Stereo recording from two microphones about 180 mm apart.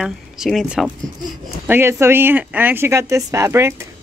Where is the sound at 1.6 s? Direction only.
10° right (ahead or behind).